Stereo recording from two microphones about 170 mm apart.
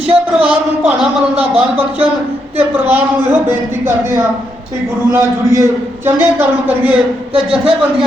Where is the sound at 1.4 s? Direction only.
35° right (ahead or behind).